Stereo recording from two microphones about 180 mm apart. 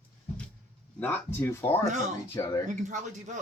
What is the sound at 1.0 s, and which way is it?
Speech, 10° left (ahead or behind).